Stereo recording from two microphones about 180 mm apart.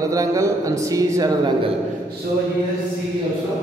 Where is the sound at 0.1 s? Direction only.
20° right (ahead or behind).